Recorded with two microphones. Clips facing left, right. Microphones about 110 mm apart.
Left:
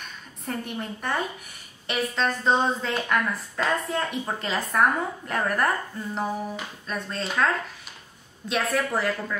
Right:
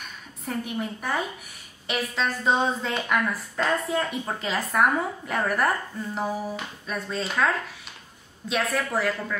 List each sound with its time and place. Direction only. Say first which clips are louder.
0.5 s a woman's voice: right 2 dB; 5° right (ahead or behind)